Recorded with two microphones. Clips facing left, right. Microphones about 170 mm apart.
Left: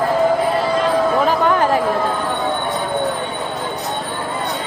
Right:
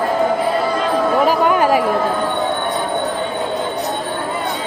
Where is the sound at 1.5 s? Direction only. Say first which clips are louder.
Right 1 dB; 10° right (ahead or behind).